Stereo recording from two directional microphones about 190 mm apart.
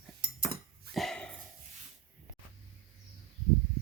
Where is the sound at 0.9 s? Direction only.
Centre (ahead or behind).